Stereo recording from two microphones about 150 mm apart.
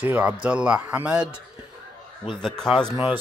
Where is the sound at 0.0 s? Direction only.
10° right (ahead or behind).